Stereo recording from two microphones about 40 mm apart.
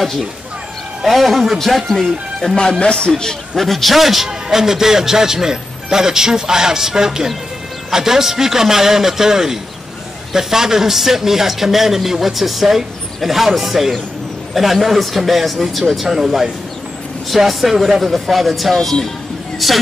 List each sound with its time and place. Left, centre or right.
1.0 s speech: centre
2.8 s a man's voice: left
3.1 s a man's voice: centre